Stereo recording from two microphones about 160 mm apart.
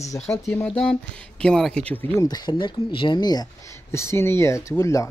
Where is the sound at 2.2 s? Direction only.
25° left (ahead or behind).